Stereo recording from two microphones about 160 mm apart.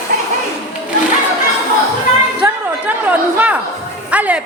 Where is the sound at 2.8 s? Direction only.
10° right (ahead or behind).